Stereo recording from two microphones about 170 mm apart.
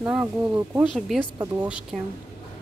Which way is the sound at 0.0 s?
10° right (ahead or behind).